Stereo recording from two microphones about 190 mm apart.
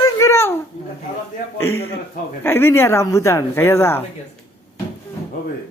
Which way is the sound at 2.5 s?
10° left (ahead or behind).